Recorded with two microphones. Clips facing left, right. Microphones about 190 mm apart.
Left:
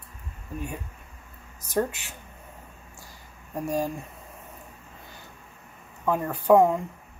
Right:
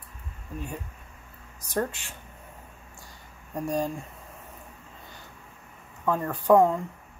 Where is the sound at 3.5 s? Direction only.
5° left (ahead or behind).